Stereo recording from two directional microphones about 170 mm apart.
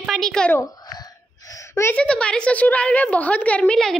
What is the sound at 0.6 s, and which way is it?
A woman's voice, 25° left (ahead or behind).